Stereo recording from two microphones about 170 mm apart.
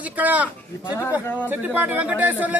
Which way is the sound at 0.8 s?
20° left (ahead or behind).